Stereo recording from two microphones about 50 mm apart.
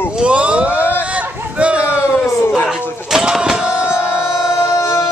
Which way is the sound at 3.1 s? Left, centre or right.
Centre.